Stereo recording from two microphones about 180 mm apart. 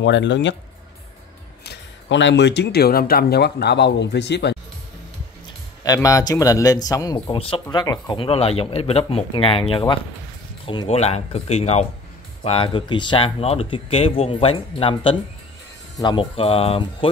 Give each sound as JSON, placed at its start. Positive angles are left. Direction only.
{"t": 0.0, "sound": "speech", "side_deg": 85}
{"t": 1.7, "sound": "speech", "side_deg": 80}
{"t": 5.9, "sound": "speech", "side_deg": 20}